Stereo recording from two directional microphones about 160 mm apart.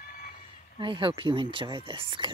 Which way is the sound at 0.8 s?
30° right (ahead or behind).